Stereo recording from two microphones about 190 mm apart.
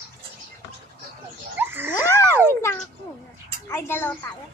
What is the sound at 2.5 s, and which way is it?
A child's voice, 15° left (ahead or behind).